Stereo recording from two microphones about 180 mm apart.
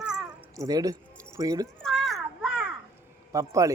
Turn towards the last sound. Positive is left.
turn(degrees=-15)  # may be behind; listen again after turning